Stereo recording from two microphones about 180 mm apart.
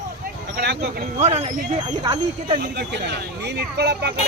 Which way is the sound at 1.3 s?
35° right (ahead or behind).